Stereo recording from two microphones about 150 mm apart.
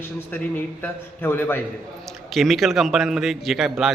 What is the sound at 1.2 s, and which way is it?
Speech, 15° left (ahead or behind).